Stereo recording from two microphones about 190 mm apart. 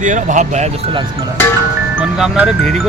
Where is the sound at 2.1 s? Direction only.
5° right (ahead or behind).